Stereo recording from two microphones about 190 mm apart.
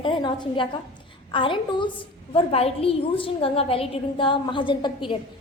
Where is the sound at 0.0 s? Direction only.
25° left (ahead or behind).